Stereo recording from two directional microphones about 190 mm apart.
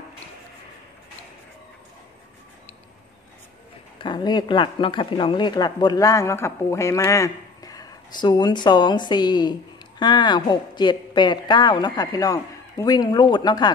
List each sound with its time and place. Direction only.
4.0 s speech: 25° left (ahead or behind)